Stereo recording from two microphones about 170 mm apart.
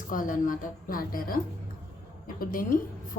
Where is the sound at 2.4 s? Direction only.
55° left (ahead or behind).